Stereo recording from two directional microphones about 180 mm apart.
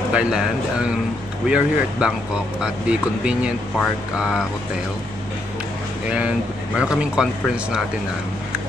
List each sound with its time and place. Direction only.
0.1 s speech: 5° right (ahead or behind)
6.0 s speech: 5° right (ahead or behind)